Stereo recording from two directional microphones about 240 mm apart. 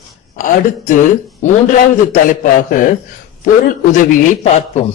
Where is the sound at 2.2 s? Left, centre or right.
Left.